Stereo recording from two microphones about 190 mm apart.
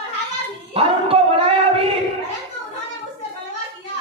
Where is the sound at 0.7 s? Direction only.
30° right (ahead or behind).